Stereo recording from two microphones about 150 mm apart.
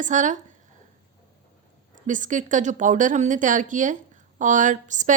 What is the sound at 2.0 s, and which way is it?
A woman's voice, 55° right (ahead or behind).